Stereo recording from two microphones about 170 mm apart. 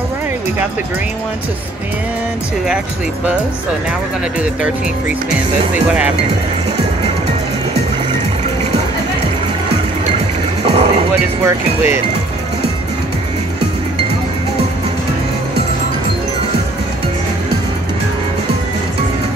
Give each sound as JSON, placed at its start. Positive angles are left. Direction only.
{"t": 10.6, "sound": "music", "side_deg": -35}
{"t": 11.4, "sound": "speech", "side_deg": -15}